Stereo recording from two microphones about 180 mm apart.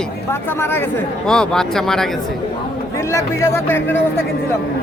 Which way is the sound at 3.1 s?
15° left (ahead or behind).